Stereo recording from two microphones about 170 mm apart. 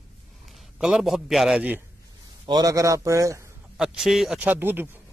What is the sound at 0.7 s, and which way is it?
Speech, 5° right (ahead or behind).